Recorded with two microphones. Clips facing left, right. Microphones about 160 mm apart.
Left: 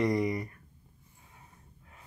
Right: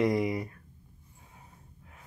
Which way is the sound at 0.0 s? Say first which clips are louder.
Right 1 dB; 5° right (ahead or behind).